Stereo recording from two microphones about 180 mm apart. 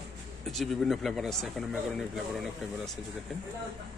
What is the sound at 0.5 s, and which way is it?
Speech, centre (ahead or behind).